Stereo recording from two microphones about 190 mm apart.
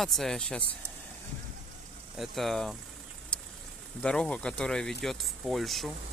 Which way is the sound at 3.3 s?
5° left (ahead or behind).